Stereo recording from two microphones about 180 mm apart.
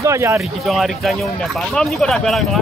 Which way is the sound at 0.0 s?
15° right (ahead or behind).